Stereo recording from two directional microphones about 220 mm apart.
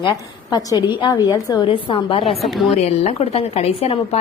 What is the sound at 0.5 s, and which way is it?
A woman's voice, 20° left (ahead or behind).